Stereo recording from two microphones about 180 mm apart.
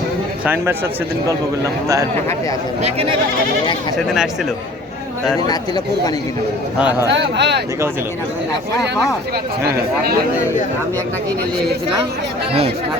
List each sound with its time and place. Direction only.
0.4 s a man's voice: 10° right (ahead or behind)
2.8 s speech: 35° right (ahead or behind)
3.9 s speech: centre (ahead or behind)
5.5 s speech: 20° left (ahead or behind)
7.1 s speech: 75° right (ahead or behind)